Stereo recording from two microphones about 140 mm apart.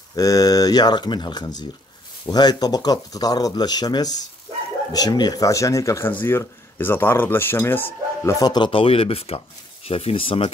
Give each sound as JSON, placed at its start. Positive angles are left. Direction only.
{"t": 0.1, "sound": "speech", "side_deg": 25}